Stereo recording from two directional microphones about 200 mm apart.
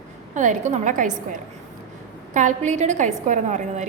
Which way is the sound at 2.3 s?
40° right (ahead or behind).